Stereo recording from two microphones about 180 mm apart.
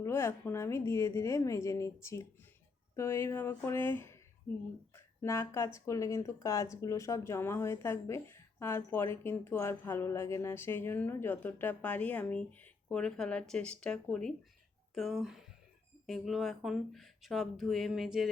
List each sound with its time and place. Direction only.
0.0 s speech: 15° left (ahead or behind)
5.2 s speech: 15° left (ahead or behind); by 18.3 s centre (ahead or behind)